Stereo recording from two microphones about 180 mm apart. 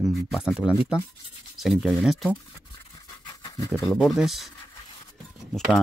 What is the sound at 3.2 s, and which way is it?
Pant, 25° left (ahead or behind).